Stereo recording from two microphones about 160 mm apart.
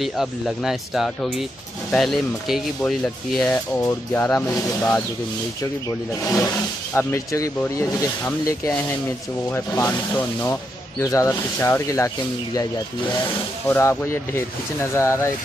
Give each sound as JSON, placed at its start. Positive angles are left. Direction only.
{"t": 0.0, "sound": "speech", "side_deg": 0}
{"t": 3.0, "sound": "speech", "side_deg": 10}
{"t": 13.7, "sound": "speech", "side_deg": 15}